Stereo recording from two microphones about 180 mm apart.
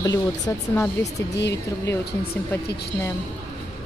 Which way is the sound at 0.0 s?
20° left (ahead or behind).